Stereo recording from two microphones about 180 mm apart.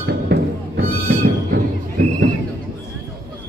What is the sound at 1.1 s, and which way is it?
Music, 60° right (ahead or behind).